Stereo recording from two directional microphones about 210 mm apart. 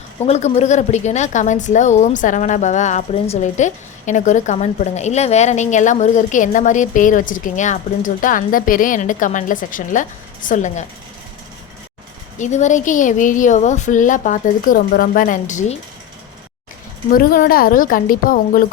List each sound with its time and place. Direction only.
0.3 s a woman's voice: 30° left (ahead or behind)
12.4 s a woman's voice: 35° left (ahead or behind)
17.1 s a woman's voice: 45° left (ahead or behind)